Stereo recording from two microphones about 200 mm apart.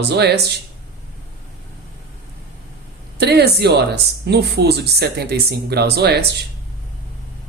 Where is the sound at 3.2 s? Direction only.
55° right (ahead or behind).